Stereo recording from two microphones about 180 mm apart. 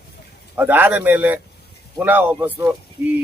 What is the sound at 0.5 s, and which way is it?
A man's voice, 10° right (ahead or behind).